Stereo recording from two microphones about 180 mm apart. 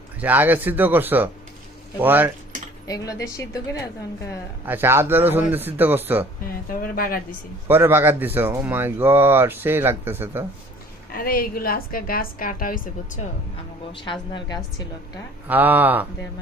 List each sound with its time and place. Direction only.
0.2 s speech: 10° right (ahead or behind)
2.8 s a woman's voice: 20° left (ahead or behind)
4.6 s speech: 10° right (ahead or behind)
6.7 s speech: 50° left (ahead or behind)
7.7 s speech: 10° right (ahead or behind)
11.1 s a woman's voice: 55° left (ahead or behind)
14.0 s a woman's voice: 25° left (ahead or behind)
15.4 s speech: 10° right (ahead or behind)